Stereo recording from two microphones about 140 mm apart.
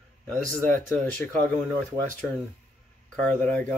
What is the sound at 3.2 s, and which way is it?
Speech, 15° left (ahead or behind).